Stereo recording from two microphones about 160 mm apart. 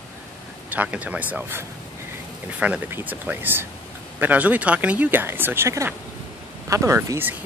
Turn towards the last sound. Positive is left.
turn(degrees=-15)  # may be behind; listen again after turning